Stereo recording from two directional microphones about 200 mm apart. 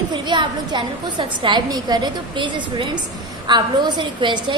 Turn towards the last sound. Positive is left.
turn(degrees=-20)  # may be behind; listen again after turning